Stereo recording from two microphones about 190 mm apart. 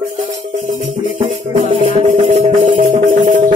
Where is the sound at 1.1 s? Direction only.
30° right (ahead or behind).